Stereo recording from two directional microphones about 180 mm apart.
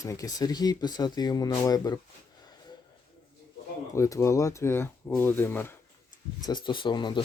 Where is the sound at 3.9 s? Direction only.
15° left (ahead or behind).